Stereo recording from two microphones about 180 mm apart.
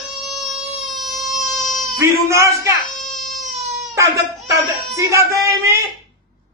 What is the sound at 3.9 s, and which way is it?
Speech, 15° right (ahead or behind).